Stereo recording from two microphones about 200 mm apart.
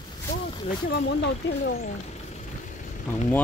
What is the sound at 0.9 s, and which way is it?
Speech, 55° left (ahead or behind).